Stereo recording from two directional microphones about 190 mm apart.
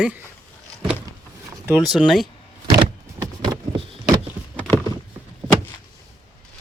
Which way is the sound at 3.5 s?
20° right (ahead or behind).